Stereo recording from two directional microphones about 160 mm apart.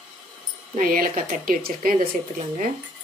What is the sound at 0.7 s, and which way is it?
Speech, 55° right (ahead or behind).